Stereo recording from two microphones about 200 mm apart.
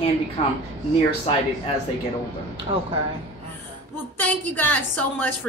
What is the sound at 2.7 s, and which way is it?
Speech, 25° right (ahead or behind).